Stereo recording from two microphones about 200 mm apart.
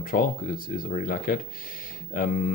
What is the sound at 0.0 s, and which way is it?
Speech, 45° left (ahead or behind).